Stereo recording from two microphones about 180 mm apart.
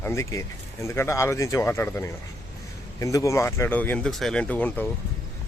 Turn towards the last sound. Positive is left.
turn(degrees=10)  # may be behind; listen again after turning